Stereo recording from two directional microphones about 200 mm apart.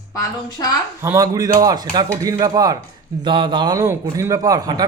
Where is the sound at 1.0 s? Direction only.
15° right (ahead or behind).